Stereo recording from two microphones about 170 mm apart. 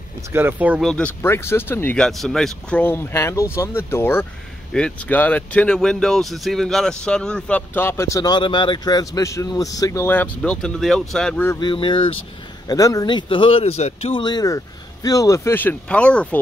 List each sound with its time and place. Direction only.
0.3 s speech: 15° right (ahead or behind)
0.8 s speech: 5° left (ahead or behind)
11.6 s speech: 30° left (ahead or behind)
14.2 s speech: 20° left (ahead or behind); by 16.3 s 5° left (ahead or behind)